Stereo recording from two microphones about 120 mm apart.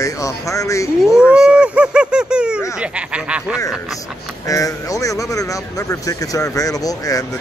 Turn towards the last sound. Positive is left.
turn(degrees=30)  # may be behind; listen again after turning